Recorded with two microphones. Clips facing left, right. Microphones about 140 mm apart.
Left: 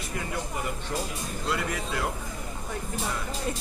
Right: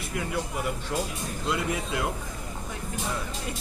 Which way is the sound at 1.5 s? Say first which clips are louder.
Right 2 dB; 15° right (ahead or behind).